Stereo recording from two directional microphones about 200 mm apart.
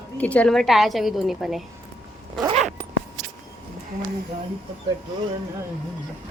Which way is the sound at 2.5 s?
40° right (ahead or behind).